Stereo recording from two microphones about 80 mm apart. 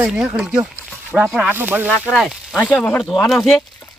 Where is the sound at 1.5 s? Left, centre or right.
Right.